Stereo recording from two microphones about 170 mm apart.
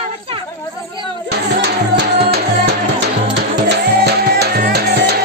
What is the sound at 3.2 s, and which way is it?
Music, 85° right.